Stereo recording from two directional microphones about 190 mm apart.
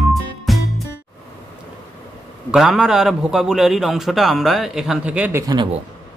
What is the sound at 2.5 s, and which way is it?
A man's voice, 5° right (ahead or behind).